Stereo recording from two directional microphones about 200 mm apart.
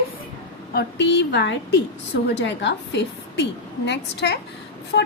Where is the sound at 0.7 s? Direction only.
60° left (ahead or behind).